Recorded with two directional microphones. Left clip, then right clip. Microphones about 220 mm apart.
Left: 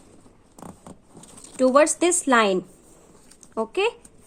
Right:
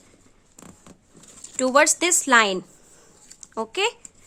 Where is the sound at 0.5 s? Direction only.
Centre (ahead or behind).